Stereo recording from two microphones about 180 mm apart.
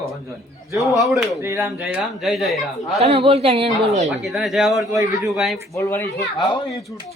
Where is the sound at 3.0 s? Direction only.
30° right (ahead or behind).